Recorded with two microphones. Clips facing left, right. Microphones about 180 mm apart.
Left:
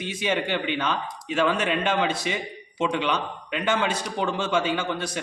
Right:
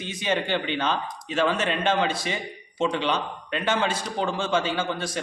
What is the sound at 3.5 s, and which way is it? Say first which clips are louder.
Speech: even; 25° right (ahead or behind).